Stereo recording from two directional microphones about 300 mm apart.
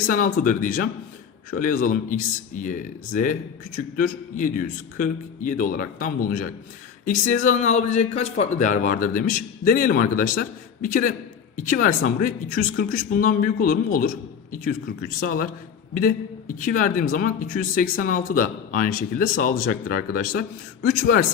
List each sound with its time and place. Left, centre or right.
0.1 s a man's voice: left